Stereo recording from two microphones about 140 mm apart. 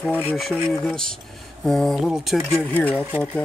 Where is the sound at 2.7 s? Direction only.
10° left (ahead or behind).